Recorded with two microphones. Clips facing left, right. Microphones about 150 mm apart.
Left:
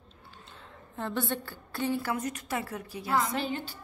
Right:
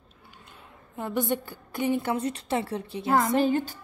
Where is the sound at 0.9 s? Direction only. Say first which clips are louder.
Right 4 dB; 15° right (ahead or behind).